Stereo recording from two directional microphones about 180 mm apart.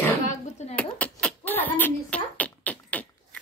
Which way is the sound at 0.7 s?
10° left (ahead or behind).